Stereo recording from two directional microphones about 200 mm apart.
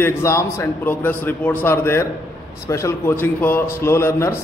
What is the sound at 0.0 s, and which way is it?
A man's voice, 15° left (ahead or behind).